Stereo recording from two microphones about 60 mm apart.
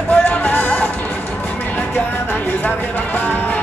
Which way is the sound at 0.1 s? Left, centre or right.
Left.